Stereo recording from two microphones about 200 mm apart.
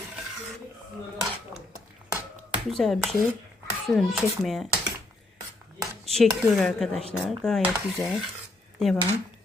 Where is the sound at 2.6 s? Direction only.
Centre (ahead or behind).